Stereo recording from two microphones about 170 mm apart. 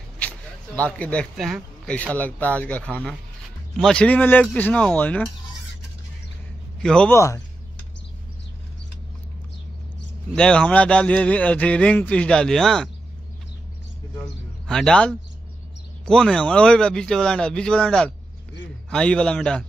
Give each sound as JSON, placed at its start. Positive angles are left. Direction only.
{"t": 0.7, "sound": "speech", "side_deg": 10}
{"t": 6.8, "sound": "speech", "side_deg": 5}
{"t": 7.2, "sound": "speech", "side_deg": 15}
{"t": 10.3, "sound": "speech", "side_deg": 5}
{"t": 14.7, "sound": "speech", "side_deg": 5}